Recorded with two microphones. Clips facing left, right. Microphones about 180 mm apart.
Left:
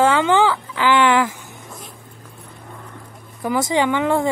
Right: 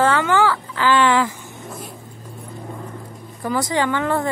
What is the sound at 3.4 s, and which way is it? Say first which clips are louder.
Speech: left 2 dB; 20° left (ahead or behind).